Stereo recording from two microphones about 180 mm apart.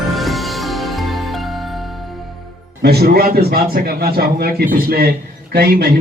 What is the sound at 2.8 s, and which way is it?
A man's voice, 60° right (ahead or behind).